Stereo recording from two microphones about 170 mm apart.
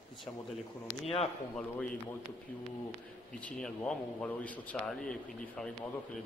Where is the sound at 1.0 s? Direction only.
35° left (ahead or behind).